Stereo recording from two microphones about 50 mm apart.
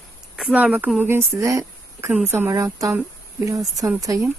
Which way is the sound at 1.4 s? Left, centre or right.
Right.